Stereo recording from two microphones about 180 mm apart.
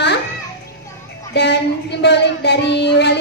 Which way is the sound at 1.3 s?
70° left (ahead or behind).